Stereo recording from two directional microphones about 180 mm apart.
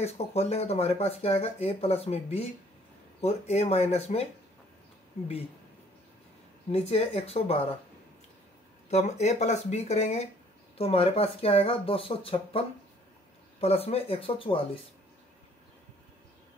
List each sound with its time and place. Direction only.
0.0 s speech: 35° left (ahead or behind)
6.7 s speech: 35° left (ahead or behind)
8.9 s speech: 40° left (ahead or behind)